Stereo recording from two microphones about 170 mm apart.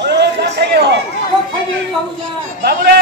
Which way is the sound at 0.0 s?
80° right.